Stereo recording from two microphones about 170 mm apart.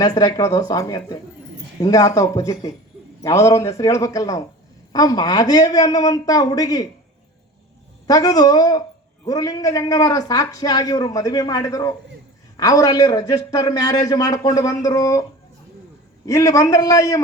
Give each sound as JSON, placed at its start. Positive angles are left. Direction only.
{"t": 0.0, "sound": "a man's voice", "side_deg": 20}
{"t": 8.0, "sound": "a man's voice", "side_deg": 20}
{"t": 16.2, "sound": "a man's voice", "side_deg": 20}